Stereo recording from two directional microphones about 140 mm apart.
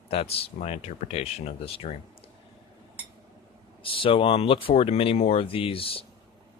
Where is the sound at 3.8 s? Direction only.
40° left (ahead or behind).